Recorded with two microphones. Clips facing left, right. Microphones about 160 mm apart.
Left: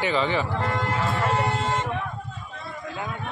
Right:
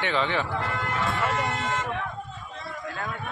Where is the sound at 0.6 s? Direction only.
35° left (ahead or behind).